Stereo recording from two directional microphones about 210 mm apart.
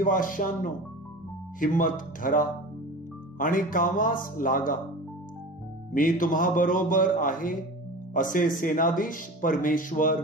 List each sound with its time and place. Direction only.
0.0 s speech: 40° left (ahead or behind)
5.9 s speech: 40° left (ahead or behind)